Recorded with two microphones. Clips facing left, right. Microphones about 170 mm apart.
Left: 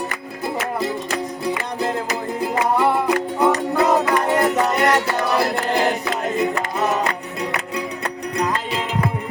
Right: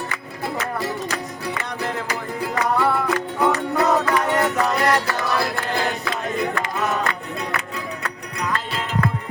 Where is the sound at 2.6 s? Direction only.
15° left (ahead or behind).